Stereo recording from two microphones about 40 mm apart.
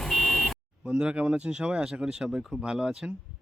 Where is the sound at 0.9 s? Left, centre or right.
Right.